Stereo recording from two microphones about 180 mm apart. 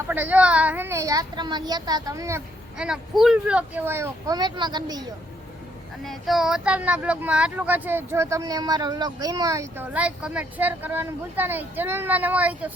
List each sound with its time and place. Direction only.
0.1 s speech: 10° right (ahead or behind)
2.7 s speech: 5° right (ahead or behind); by 5.0 s 20° right (ahead or behind)
6.1 s speech: centre (ahead or behind)